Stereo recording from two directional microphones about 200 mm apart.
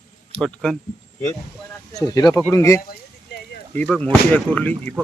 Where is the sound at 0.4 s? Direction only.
Centre (ahead or behind).